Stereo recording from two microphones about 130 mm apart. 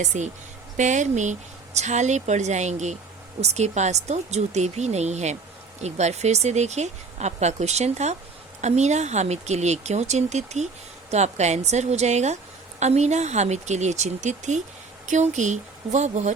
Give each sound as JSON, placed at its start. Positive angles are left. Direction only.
{"t": 0.0, "sound": "speech", "side_deg": -65}